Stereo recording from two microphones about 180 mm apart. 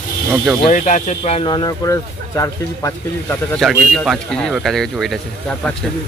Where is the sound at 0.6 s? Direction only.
45° left (ahead or behind); by 3.3 s 15° left (ahead or behind).